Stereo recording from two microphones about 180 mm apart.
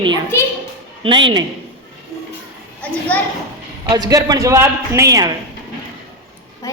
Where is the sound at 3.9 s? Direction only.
20° right (ahead or behind).